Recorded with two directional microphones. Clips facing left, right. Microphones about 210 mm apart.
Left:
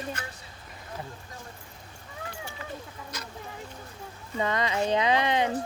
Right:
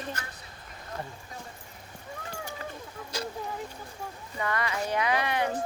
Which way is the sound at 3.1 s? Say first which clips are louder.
Right 9 dB; 30° right (ahead or behind).